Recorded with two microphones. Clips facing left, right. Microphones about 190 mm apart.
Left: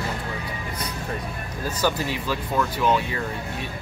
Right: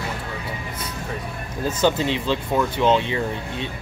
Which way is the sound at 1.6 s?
25° right (ahead or behind).